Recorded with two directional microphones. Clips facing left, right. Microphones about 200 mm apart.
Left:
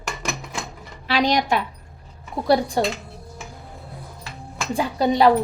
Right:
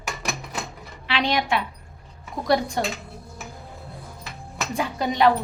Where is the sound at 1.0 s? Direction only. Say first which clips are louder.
Left 4 dB; 40° left (ahead or behind).